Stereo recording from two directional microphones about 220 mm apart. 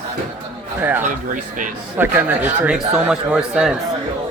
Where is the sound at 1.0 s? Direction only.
35° right (ahead or behind).